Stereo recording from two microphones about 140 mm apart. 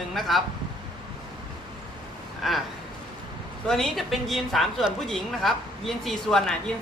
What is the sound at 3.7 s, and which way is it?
A woman's voice, centre (ahead or behind).